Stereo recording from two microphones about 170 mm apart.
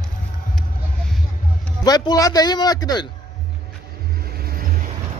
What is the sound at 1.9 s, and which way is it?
A man's voice, 25° left (ahead or behind).